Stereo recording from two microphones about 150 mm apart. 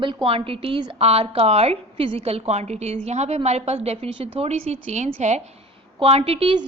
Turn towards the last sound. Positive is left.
turn(degrees=-40)  # may be behind; listen again after turning